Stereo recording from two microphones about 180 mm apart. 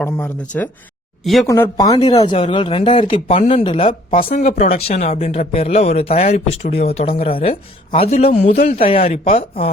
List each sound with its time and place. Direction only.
0.0 s speech: 10° left (ahead or behind)
1.5 s speech: 15° left (ahead or behind)
4.2 s speech: 45° left (ahead or behind)
5.4 s a man's voice: 50° left (ahead or behind)
5.6 s speech: 35° left (ahead or behind)